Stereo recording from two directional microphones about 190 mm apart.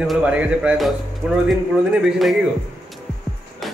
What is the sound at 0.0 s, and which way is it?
A man's voice, 5° right (ahead or behind).